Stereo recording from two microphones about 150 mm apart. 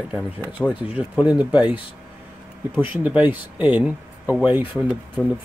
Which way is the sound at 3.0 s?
10° right (ahead or behind).